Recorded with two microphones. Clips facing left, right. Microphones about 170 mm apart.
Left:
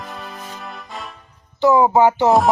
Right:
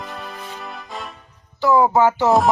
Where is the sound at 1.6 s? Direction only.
20° left (ahead or behind).